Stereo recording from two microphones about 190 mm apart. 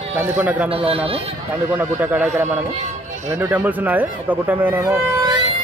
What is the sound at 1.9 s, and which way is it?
Speech, 10° right (ahead or behind).